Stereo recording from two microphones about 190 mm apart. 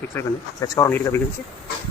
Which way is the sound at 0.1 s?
15° left (ahead or behind).